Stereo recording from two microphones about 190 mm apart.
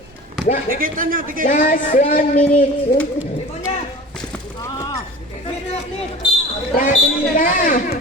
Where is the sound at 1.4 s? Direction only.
40° left (ahead or behind).